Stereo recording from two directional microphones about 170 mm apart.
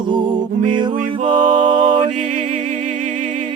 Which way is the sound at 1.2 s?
45° right (ahead or behind).